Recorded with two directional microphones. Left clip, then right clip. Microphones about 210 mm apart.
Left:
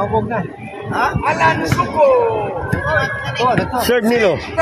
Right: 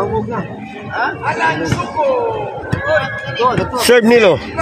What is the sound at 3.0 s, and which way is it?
Speech, 50° left (ahead or behind).